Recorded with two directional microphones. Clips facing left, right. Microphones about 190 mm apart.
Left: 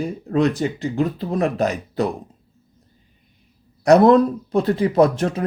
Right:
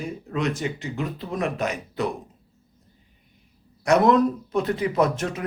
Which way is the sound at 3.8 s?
35° left (ahead or behind).